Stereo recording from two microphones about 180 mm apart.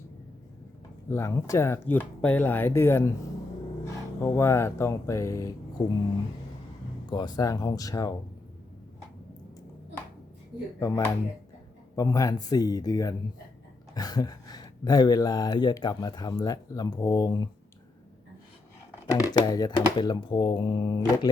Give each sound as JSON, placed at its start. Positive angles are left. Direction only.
{"t": 1.0, "sound": "speech", "side_deg": 15}
{"t": 7.1, "sound": "speech", "side_deg": 25}
{"t": 10.8, "sound": "speech", "side_deg": 15}
{"t": 19.1, "sound": "speech", "side_deg": 20}